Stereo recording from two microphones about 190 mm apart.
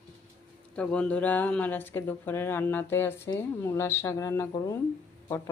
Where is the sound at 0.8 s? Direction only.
5° left (ahead or behind).